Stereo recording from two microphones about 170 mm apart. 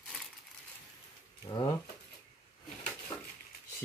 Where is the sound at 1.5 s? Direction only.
30° left (ahead or behind).